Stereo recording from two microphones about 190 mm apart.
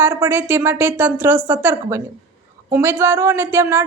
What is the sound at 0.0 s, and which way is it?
Speech, 15° right (ahead or behind).